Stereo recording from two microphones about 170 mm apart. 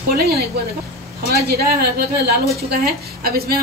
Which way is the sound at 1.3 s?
70° right (ahead or behind).